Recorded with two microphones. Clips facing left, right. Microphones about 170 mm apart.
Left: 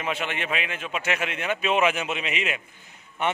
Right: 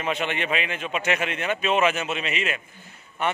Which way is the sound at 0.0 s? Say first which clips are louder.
Right 3 dB; 5° left (ahead or behind).